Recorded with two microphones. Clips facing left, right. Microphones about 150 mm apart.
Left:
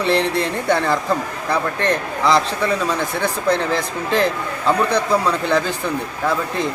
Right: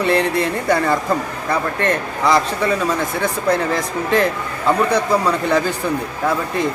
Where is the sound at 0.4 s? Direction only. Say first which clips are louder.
Right 1 dB; 5° right (ahead or behind).